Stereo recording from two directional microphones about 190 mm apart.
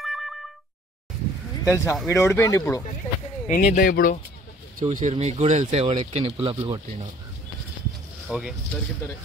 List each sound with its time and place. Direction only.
0.0 s boing: centre (ahead or behind)
1.6 s speech: 15° left (ahead or behind)
3.4 s speech: 45° left (ahead or behind)
4.7 s speech: 40° right (ahead or behind); by 7.1 s 25° right (ahead or behind)
8.3 s speech: 5° right (ahead or behind)